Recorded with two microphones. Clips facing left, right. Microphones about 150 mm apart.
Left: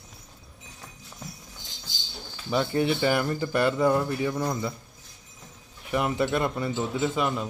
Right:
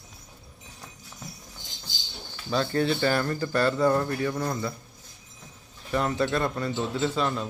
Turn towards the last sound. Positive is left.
turn(degrees=10)  # may be behind; listen again after turning